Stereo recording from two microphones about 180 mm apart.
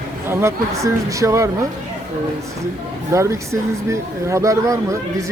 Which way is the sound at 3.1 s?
15° right (ahead or behind).